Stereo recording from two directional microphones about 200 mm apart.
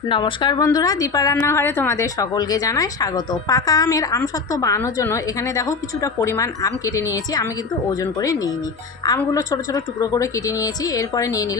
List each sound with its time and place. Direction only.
0.1 s a woman's voice: 20° left (ahead or behind)
9.0 s a woman's voice: 15° left (ahead or behind)